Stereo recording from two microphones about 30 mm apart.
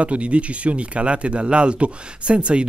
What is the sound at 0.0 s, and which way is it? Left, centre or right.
Speech, right.